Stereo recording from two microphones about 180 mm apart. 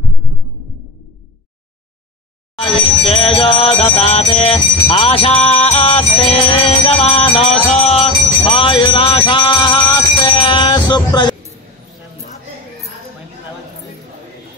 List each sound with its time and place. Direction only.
3.0 s music: 30° left (ahead or behind)
7.7 s jingle bell: 35° left (ahead or behind)